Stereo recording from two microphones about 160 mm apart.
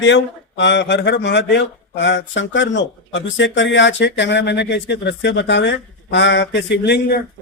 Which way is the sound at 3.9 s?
90° left.